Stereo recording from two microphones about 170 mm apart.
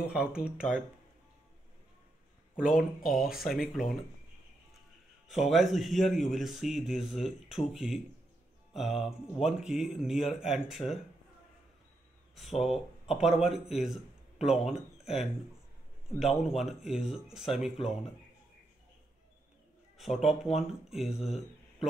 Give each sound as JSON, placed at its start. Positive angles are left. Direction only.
{"t": 0.0, "sound": "speech", "side_deg": -5}
{"t": 2.5, "sound": "speech", "side_deg": 0}
{"t": 5.5, "sound": "speech", "side_deg": 0}
{"t": 12.4, "sound": "speech", "side_deg": 0}
{"t": 20.0, "sound": "speech", "side_deg": 0}